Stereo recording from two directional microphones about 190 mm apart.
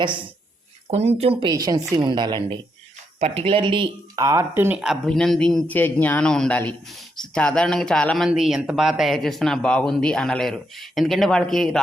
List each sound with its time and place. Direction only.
0.9 s speech: 35° right (ahead or behind); by 11.8 s centre (ahead or behind)